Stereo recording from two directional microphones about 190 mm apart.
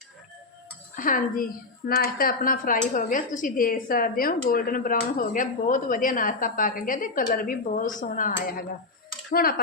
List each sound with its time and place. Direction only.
0.9 s speech: 45° left (ahead or behind)